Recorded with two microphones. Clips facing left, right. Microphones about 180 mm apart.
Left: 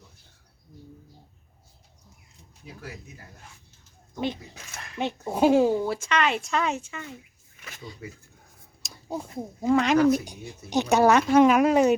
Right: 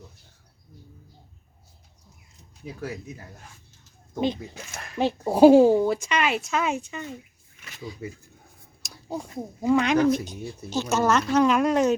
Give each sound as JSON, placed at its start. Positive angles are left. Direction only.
{"t": 4.9, "sound": "speech", "side_deg": -35}
{"t": 5.8, "sound": "speech", "side_deg": -15}
{"t": 6.7, "sound": "speech", "side_deg": -20}
{"t": 8.8, "sound": "a sound", "side_deg": 0}
{"t": 9.4, "sound": "a woman's voice", "side_deg": 0}